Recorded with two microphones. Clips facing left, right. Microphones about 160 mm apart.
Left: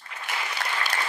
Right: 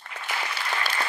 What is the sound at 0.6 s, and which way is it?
Applause, 70° left (ahead or behind).